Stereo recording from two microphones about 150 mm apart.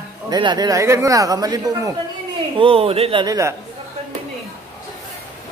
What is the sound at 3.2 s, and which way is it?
Speech, 20° right (ahead or behind).